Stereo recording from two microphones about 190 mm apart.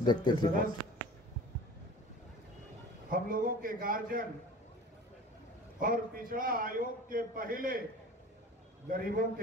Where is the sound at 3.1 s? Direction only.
45° right (ahead or behind).